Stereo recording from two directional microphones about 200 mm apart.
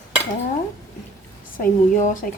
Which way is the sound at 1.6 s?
40° left (ahead or behind).